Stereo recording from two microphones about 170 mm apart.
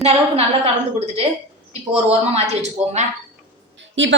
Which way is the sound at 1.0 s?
35° right (ahead or behind).